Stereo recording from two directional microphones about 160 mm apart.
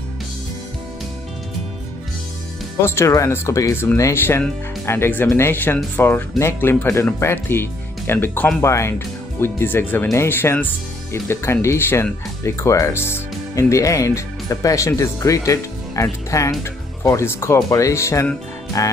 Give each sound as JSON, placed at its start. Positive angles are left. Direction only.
{"t": 2.8, "sound": "speech", "side_deg": 15}